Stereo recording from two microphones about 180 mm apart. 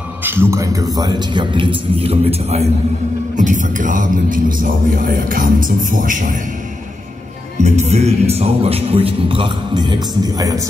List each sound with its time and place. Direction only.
0.2 s a man's voice: 10° right (ahead or behind); by 2.6 s 30° right (ahead or behind)
3.6 s a man's voice: 45° right (ahead or behind)
7.6 s a man's voice: 40° right (ahead or behind); by 10.6 s 20° right (ahead or behind)